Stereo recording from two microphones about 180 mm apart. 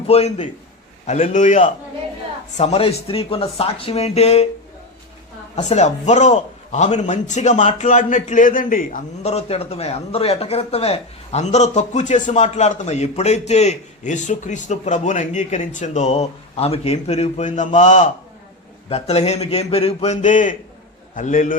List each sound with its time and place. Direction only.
0.1 s a man's voice: 35° left (ahead or behind)
5.5 s a man's voice: 40° left (ahead or behind)